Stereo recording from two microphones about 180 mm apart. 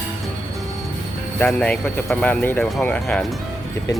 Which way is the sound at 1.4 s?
5° left (ahead or behind).